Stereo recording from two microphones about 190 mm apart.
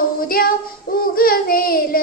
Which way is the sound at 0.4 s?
50° left (ahead or behind).